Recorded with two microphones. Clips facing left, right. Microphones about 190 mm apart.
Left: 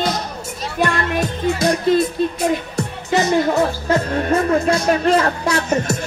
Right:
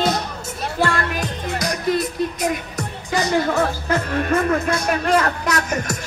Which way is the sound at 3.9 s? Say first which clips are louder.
Left 3 dB; 30° left (ahead or behind).